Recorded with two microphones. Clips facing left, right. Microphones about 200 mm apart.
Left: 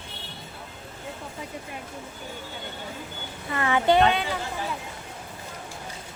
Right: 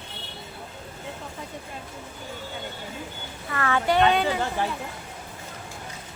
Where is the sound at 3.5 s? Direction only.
20° left (ahead or behind).